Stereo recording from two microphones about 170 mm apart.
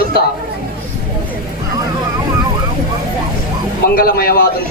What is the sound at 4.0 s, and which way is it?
Speech, 60° left (ahead or behind).